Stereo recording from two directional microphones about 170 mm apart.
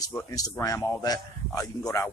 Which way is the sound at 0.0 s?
15° left (ahead or behind).